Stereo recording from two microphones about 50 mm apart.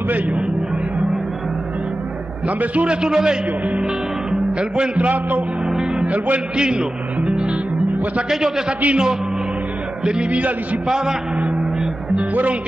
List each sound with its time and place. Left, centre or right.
2.4 s a man's voice: right
3.0 s a man's voice: centre; by 5.4 s right
5.7 s music: centre
6.0 s a man's voice: right
6.6 s a man's voice: centre
7.2 s music: right
8.3 s a man's voice: centre; by 10.8 s right
11.3 s gong: right
12.2 s a man's voice: right